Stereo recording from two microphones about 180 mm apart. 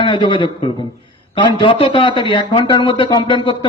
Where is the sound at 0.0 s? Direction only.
25° left (ahead or behind).